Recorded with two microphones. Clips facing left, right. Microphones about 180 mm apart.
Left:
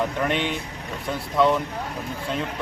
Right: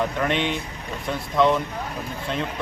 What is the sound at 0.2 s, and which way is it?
A man's voice, 10° left (ahead or behind).